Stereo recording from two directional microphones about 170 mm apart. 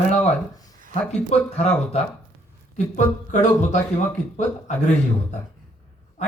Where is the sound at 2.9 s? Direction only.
45° left (ahead or behind).